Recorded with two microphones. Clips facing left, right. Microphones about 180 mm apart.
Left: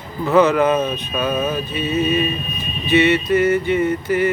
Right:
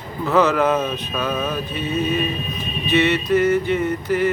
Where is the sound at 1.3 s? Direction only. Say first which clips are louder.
Left 3 dB; 20° left (ahead or behind).